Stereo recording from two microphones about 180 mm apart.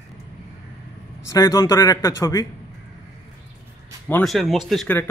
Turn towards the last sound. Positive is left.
turn(degrees=0)  # may be behind; listen again after turning